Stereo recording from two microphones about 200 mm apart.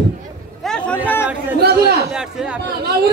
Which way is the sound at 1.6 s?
55° right (ahead or behind).